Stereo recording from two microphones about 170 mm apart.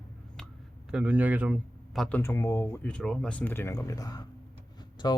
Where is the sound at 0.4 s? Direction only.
5° left (ahead or behind).